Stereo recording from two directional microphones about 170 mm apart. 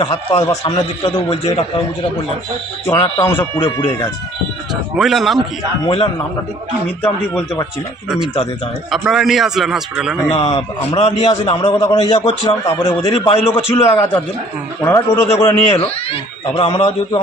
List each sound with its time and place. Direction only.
0.0 s a man's voice: 35° left (ahead or behind)
2.8 s a man's voice: 20° left (ahead or behind)
3.6 s a man's voice: 35° left (ahead or behind)
4.9 s a man's voice: centre (ahead or behind)
7.0 s a man's voice: 10° left (ahead or behind)
8.9 s a man's voice: centre (ahead or behind)
10.3 s a man's voice: 35° left (ahead or behind)
12.6 s a man's voice: 20° left (ahead or behind)
13.1 s a man's voice: 35° left (ahead or behind)
13.7 s a man's voice: 20° left (ahead or behind)
15.7 s a man's voice: 35° left (ahead or behind)